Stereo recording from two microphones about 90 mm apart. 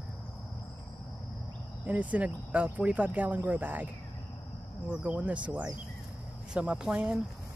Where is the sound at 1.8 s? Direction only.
15° right (ahead or behind).